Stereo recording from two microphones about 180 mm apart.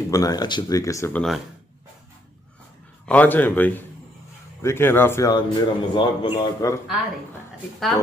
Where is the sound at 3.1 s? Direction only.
10° left (ahead or behind).